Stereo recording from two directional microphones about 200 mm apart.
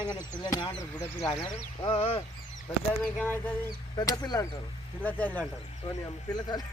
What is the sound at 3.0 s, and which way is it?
Speech, 10° left (ahead or behind).